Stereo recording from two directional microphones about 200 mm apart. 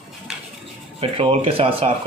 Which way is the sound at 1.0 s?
30° right (ahead or behind).